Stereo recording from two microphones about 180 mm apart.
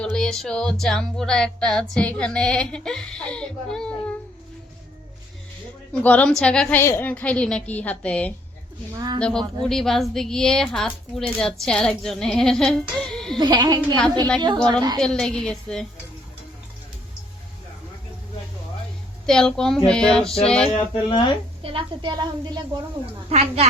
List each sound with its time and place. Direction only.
0.0 s speech: 5° left (ahead or behind)
5.9 s a woman's voice: 10° left (ahead or behind)
9.0 s a woman's voice: 20° right (ahead or behind)
9.6 s speech: centre (ahead or behind)
13.3 s a woman's voice: 25° right (ahead or behind)
14.9 s speech: 5° left (ahead or behind)
19.2 s speech: 5° left (ahead or behind)
20.7 s speech: 25° left (ahead or behind)
21.6 s a woman's voice: 30° right (ahead or behind)
23.3 s a woman's voice: 35° right (ahead or behind)